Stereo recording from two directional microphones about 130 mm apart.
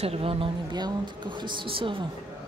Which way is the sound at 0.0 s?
50° right (ahead or behind).